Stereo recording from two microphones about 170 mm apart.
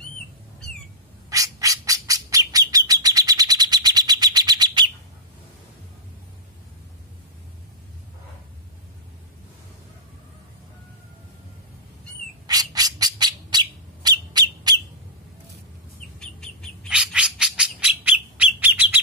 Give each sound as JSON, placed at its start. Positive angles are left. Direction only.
{"t": 1.3, "sound": "bird", "side_deg": -20}
{"t": 12.4, "sound": "bird", "side_deg": -20}
{"t": 16.2, "sound": "bird", "side_deg": 5}